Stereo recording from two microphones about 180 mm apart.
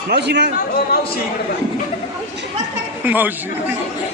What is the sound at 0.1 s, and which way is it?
Speech, 70° right (ahead or behind).